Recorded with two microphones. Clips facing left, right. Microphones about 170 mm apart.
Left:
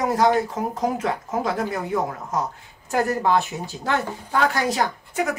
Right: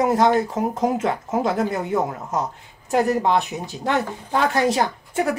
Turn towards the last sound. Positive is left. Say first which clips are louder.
# right 2 dB
turn(degrees=-25)  # may be behind; listen again after turning